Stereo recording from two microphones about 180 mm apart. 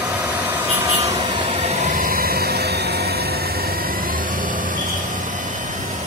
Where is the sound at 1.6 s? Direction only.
40° right (ahead or behind).